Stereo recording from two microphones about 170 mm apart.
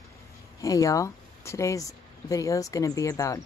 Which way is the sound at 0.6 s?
20° left (ahead or behind).